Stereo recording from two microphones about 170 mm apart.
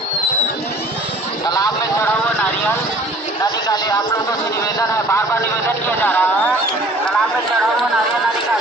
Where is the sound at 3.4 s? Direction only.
25° left (ahead or behind).